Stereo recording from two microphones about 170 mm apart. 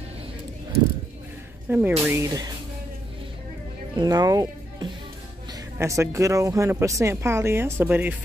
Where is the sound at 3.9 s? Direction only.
20° right (ahead or behind).